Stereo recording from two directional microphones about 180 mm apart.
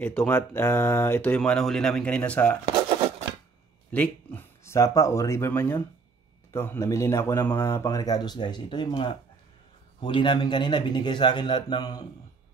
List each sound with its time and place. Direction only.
0.0 s speech: 10° left (ahead or behind)
3.9 s speech: 10° left (ahead or behind)